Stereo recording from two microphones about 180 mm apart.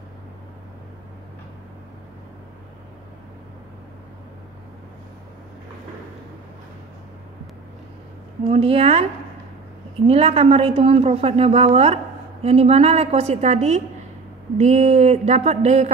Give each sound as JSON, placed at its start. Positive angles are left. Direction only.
{"t": 8.5, "sound": "speech", "side_deg": -35}
{"t": 10.0, "sound": "speech", "side_deg": -35}